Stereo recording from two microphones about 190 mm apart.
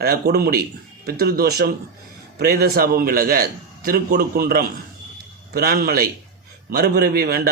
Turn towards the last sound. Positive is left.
turn(degrees=-55)  # may be behind; listen again after turning